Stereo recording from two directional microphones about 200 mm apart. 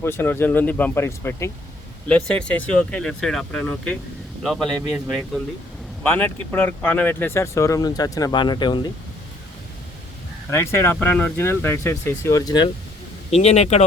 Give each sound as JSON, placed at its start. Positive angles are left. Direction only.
{"t": 0.0, "sound": "speech", "side_deg": 10}
{"t": 10.5, "sound": "speech", "side_deg": 15}
{"t": 13.3, "sound": "speech", "side_deg": 35}